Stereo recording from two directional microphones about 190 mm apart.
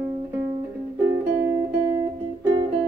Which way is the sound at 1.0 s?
10° right (ahead or behind).